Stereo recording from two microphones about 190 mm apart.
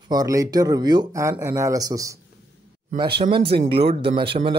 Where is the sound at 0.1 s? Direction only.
20° right (ahead or behind).